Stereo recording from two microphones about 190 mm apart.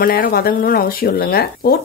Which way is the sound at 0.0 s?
50° left (ahead or behind).